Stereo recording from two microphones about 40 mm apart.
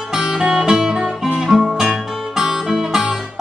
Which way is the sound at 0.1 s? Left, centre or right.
Centre.